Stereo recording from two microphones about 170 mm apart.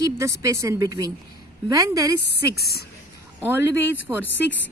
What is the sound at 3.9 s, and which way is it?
Speech, 10° right (ahead or behind).